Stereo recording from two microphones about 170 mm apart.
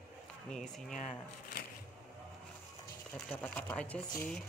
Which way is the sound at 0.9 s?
45° left (ahead or behind).